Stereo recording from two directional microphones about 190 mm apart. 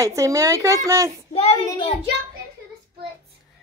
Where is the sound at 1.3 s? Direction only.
35° left (ahead or behind).